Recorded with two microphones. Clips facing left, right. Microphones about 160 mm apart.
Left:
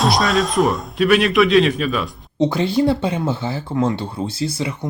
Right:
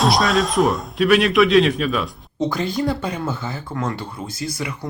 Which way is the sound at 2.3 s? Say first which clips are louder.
Left 5 dB; 25° left (ahead or behind).